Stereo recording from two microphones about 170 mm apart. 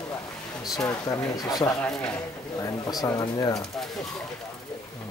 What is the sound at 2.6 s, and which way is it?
Speech, 20° left (ahead or behind).